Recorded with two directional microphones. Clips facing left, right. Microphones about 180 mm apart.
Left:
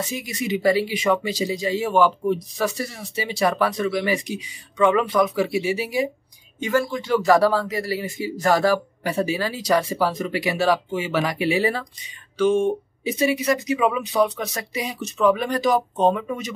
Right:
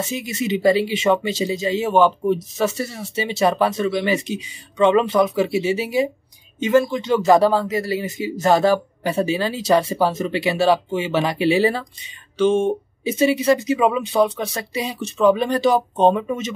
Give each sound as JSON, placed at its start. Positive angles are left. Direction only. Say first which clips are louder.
{"t": 0.0, "sound": "speech", "louder": "right 3 dB", "side_deg": -25}